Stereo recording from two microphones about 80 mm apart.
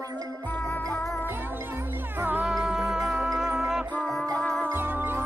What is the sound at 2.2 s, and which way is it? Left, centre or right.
Music, right.